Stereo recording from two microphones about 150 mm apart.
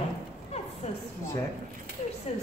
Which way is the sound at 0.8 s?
50° left (ahead or behind).